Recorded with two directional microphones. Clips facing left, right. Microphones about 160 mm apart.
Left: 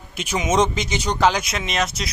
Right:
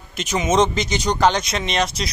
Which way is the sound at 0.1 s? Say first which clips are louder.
Right 2 dB; 10° left (ahead or behind).